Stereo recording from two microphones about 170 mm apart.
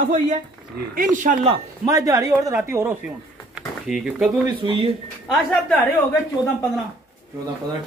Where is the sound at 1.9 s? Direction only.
20° right (ahead or behind).